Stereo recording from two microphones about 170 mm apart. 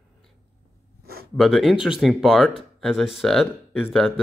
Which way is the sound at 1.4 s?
Centre (ahead or behind).